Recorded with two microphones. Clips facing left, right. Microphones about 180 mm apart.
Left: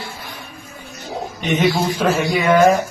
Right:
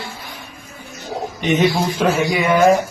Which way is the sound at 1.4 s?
20° right (ahead or behind).